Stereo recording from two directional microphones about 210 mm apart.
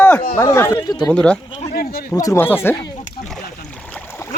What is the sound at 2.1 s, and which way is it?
Speech, 15° left (ahead or behind).